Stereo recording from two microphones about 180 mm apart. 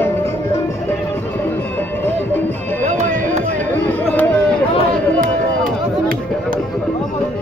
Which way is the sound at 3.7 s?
10° left (ahead or behind).